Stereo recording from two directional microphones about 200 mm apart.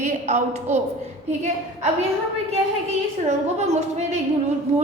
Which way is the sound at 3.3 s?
35° right (ahead or behind).